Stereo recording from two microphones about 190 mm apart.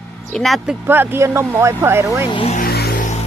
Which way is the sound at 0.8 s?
10° right (ahead or behind).